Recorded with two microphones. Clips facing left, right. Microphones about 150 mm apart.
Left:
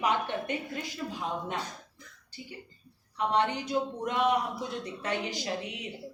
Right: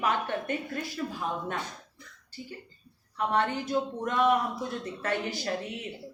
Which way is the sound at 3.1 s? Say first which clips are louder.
Even; 15° left (ahead or behind).